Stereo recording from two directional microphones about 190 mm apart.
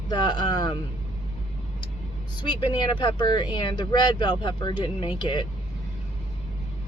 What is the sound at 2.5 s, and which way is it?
Speech, 25° left (ahead or behind).